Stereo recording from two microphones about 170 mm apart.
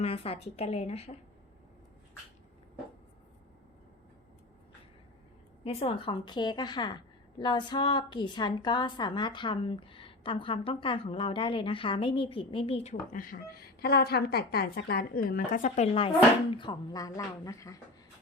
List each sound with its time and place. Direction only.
0.0 s a woman's voice: 35° left (ahead or behind)
5.6 s a woman's voice: 30° left (ahead or behind)
13.1 s a woman's voice: 55° left (ahead or behind); by 17.7 s 20° left (ahead or behind)